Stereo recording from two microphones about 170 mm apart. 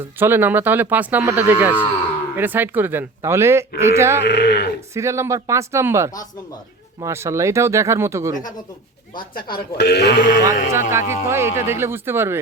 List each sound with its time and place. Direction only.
0.2 s speech: 15° right (ahead or behind)
4.2 s sheep: 75° left (ahead or behind)
4.9 s speech: 15° right (ahead or behind)
9.7 s sheep: 75° left (ahead or behind)
10.4 s speech: 15° right (ahead or behind)